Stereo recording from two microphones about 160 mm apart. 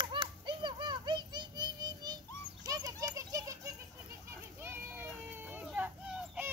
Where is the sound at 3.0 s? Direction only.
20° right (ahead or behind).